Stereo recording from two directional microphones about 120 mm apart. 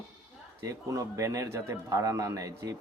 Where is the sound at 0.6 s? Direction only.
25° right (ahead or behind).